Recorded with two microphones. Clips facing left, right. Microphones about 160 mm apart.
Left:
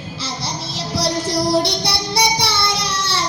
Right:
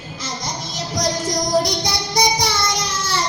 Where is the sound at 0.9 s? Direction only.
30° left (ahead or behind).